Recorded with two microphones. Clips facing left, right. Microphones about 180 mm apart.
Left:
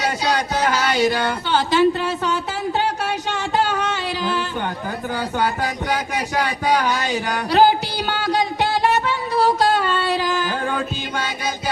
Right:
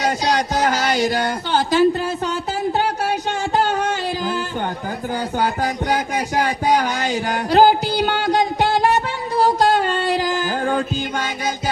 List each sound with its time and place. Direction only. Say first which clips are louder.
0.0 s speech: right 2 dB; 45° right (ahead or behind)
3.6 s music: right 2 dB; 45° right (ahead or behind)
5.4 s a sound: right 2 dB; 45° right (ahead or behind)
10.3 s music: right 2 dB; 45° right (ahead or behind)